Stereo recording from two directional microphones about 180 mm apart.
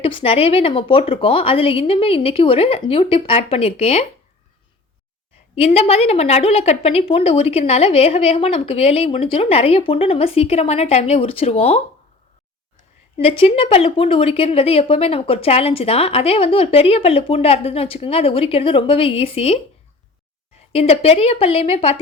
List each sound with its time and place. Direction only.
0.0 s speech: 30° left (ahead or behind)
5.5 s speech: 30° left (ahead or behind)
13.1 s speech: 30° left (ahead or behind)
20.7 s speech: 35° left (ahead or behind)